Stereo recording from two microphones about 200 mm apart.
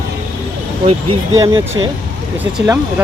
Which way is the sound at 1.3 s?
20° right (ahead or behind).